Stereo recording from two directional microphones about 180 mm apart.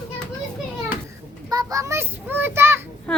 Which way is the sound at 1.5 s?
20° right (ahead or behind).